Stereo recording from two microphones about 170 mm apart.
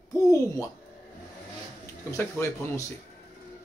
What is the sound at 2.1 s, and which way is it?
Speech, 15° left (ahead or behind).